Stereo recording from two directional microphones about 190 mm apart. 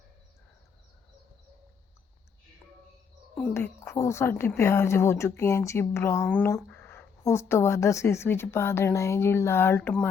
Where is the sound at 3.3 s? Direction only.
10° left (ahead or behind).